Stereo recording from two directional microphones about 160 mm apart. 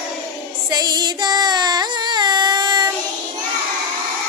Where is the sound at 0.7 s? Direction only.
25° right (ahead or behind).